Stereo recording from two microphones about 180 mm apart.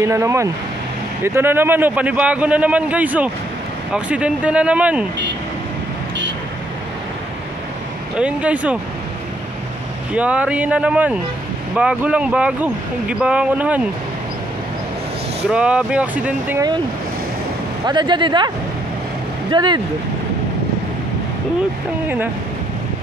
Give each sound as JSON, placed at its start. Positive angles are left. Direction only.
{"t": 0.0, "sound": "speech", "side_deg": -15}
{"t": 8.2, "sound": "speech", "side_deg": -5}
{"t": 10.1, "sound": "speech", "side_deg": -5}
{"t": 15.5, "sound": "speech", "side_deg": -5}
{"t": 17.8, "sound": "speech", "side_deg": -25}
{"t": 19.5, "sound": "speech", "side_deg": -25}
{"t": 22.0, "sound": "speech", "side_deg": -10}